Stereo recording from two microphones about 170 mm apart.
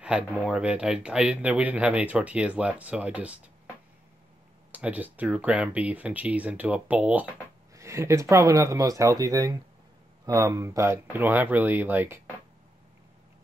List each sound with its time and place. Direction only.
0.0 s speech: 5° right (ahead or behind)
4.7 s speech: 10° right (ahead or behind)